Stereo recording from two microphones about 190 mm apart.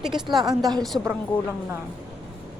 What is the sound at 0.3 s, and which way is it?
Speech, 20° right (ahead or behind).